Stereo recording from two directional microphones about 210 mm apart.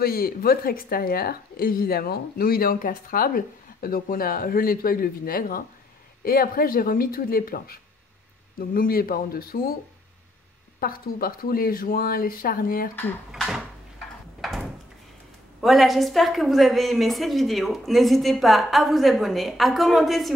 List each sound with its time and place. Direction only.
0.0 s a woman's voice: 45° left (ahead or behind)
10.8 s a woman's voice: 45° left (ahead or behind)
13.3 s a woman's voice: centre (ahead or behind)
14.4 s door: centre (ahead or behind)
15.6 s a woman's voice: centre (ahead or behind)